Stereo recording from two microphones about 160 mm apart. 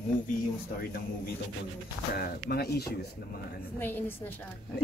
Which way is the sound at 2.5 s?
80° left.